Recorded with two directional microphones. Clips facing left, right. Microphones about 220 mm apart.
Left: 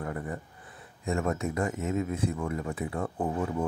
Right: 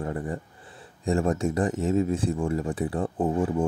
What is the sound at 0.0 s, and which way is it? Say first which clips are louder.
Speech: right 4 dB; 30° right (ahead or behind).